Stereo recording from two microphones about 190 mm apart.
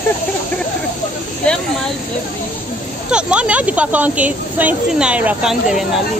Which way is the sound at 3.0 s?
5° right (ahead or behind).